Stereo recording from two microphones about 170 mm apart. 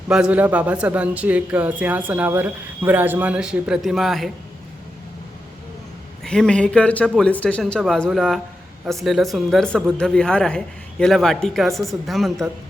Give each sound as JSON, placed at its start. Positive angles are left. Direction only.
{"t": 0.1, "sound": "a man's voice", "side_deg": -5}
{"t": 6.2, "sound": "a man's voice", "side_deg": 5}